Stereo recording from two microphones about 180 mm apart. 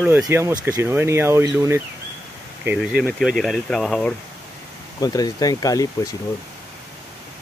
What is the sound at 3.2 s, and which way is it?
Speech, centre (ahead or behind).